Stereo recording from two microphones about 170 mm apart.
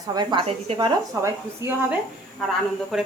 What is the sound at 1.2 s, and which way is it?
Speech, 15° right (ahead or behind).